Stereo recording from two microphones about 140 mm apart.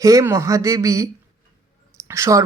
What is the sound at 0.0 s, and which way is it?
Speech, 25° right (ahead or behind).